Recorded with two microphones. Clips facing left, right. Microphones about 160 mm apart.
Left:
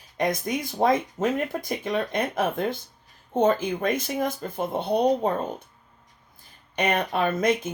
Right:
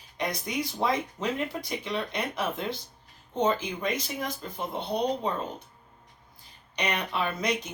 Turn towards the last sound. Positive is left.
turn(degrees=50)  # may be behind; listen again after turning